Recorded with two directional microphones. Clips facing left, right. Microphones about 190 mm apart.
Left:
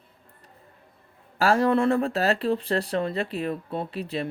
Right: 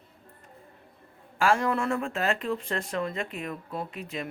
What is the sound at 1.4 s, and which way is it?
Speech, 35° left (ahead or behind).